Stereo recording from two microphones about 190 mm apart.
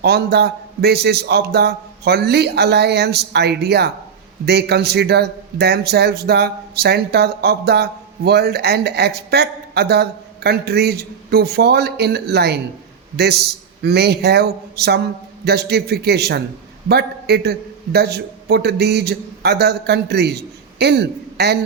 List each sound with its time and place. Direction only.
0.0 s a man's voice: 60° right (ahead or behind)